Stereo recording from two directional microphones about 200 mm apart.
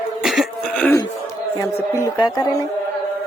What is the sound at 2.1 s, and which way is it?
Speech, 20° left (ahead or behind).